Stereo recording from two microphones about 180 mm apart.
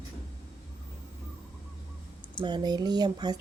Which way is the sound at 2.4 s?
25° right (ahead or behind).